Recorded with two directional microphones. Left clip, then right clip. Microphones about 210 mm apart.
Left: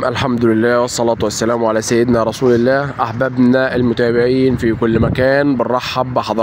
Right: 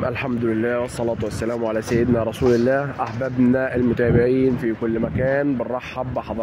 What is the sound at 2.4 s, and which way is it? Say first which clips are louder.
Speech: left 3 dB; centre (ahead or behind).